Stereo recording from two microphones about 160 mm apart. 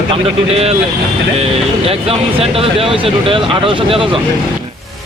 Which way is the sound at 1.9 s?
40° right (ahead or behind).